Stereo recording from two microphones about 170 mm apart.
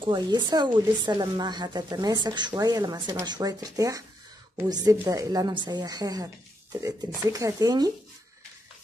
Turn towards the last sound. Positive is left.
turn(degrees=-20)  # may be behind; listen again after turning